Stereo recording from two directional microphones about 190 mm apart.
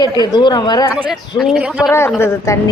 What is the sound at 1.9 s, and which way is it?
Speech, 15° left (ahead or behind).